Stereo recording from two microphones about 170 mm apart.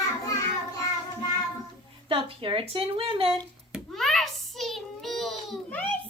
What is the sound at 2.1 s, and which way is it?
A child's voice, 30° right (ahead or behind).